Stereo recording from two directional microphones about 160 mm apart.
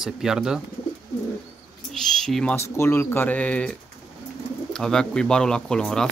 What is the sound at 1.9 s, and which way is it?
Bird, 5° left (ahead or behind).